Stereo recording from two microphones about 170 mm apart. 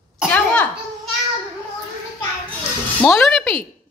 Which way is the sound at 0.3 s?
5° left (ahead or behind).